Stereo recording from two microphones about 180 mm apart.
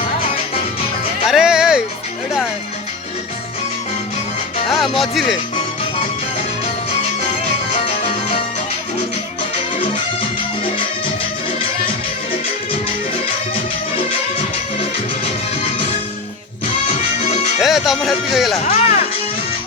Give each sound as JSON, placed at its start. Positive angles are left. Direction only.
{"t": 1.3, "sound": "music", "side_deg": -5}
{"t": 4.8, "sound": "speech", "side_deg": 0}
{"t": 16.8, "sound": "music", "side_deg": 35}
{"t": 17.6, "sound": "speech", "side_deg": 0}
{"t": 18.6, "sound": "music", "side_deg": 35}